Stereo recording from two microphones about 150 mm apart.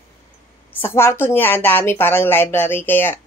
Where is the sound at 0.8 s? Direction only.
15° left (ahead or behind).